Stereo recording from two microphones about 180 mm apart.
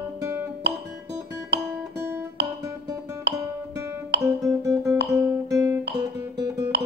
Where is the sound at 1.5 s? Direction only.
70° right (ahead or behind).